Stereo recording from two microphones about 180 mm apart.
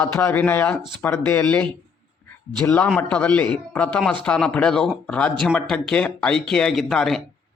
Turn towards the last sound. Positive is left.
turn(degrees=0)  # may be behind; listen again after turning